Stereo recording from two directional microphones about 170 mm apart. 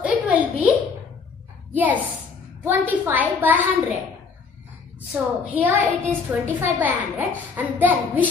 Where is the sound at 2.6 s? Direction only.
10° right (ahead or behind).